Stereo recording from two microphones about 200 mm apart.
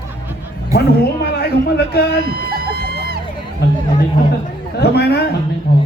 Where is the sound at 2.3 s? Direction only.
50° right (ahead or behind).